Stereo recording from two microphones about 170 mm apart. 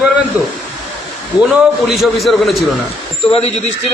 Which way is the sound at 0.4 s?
10° right (ahead or behind).